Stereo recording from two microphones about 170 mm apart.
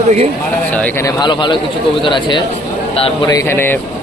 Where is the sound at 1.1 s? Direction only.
25° left (ahead or behind).